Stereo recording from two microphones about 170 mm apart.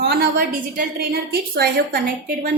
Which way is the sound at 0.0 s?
70° right (ahead or behind).